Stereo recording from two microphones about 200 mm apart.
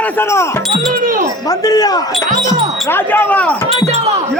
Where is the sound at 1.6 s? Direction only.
20° left (ahead or behind).